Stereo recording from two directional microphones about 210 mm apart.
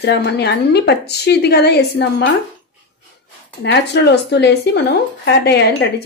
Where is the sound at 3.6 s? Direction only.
55° left (ahead or behind).